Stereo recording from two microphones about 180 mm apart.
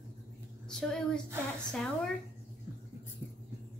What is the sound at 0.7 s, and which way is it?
Speech, 5° left (ahead or behind).